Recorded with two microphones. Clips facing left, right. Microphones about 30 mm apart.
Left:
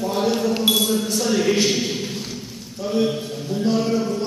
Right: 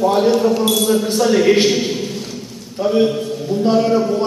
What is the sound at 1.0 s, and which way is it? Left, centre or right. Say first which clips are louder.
Speech: right 6 dB; right.